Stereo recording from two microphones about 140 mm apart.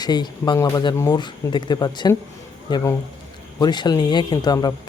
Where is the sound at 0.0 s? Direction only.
30° left (ahead or behind).